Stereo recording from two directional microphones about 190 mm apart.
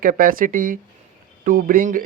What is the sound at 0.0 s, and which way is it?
Speech, 45° right (ahead or behind).